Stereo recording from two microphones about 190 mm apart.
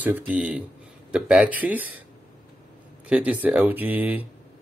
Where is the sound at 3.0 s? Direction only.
10° right (ahead or behind).